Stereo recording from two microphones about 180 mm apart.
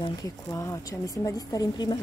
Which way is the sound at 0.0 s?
20° left (ahead or behind).